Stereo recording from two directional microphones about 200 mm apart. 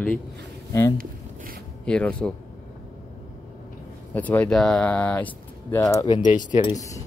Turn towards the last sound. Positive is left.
turn(degrees=20)  # may be behind; listen again after turning